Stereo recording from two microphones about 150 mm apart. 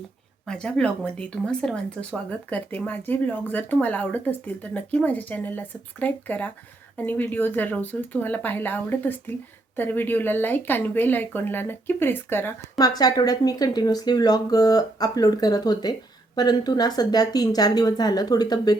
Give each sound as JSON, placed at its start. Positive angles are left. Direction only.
{"t": 0.4, "sound": "speech", "side_deg": 5}
{"t": 12.7, "sound": "speech", "side_deg": 25}